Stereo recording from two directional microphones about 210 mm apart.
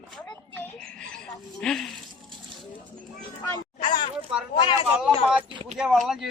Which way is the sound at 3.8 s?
20° left (ahead or behind).